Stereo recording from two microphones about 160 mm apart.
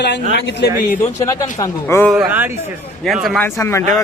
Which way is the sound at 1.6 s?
20° left (ahead or behind).